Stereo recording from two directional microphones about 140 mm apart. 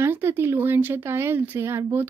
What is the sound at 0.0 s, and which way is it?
Speech, 15° right (ahead or behind).